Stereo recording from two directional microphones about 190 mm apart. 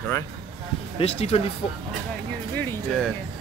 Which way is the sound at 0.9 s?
35° left (ahead or behind).